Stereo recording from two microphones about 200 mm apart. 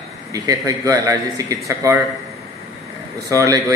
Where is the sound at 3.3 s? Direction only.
15° right (ahead or behind).